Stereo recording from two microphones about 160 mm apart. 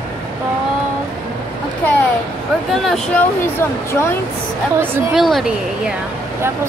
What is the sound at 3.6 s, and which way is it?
Speech, 15° left (ahead or behind).